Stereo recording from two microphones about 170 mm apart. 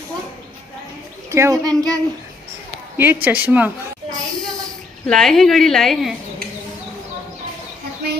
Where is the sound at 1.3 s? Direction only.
20° right (ahead or behind).